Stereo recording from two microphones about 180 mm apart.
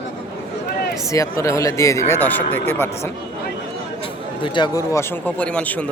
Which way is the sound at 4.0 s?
30° left (ahead or behind).